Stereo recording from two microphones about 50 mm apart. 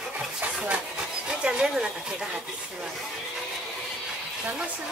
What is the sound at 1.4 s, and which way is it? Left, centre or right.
Speech, centre.